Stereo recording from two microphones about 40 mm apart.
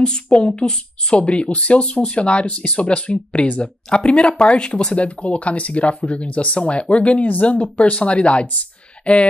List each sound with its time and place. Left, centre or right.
0.0 s speech: left